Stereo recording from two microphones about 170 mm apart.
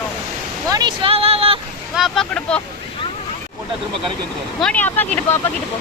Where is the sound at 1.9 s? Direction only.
Centre (ahead or behind).